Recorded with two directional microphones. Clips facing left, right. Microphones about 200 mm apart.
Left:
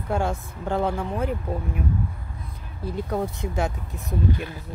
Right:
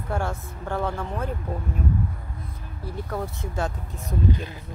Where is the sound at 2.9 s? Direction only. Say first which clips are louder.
Left 4 dB; 20° left (ahead or behind).